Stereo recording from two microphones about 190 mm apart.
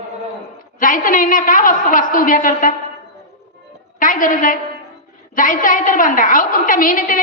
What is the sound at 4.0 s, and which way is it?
A woman's voice, 45° left (ahead or behind).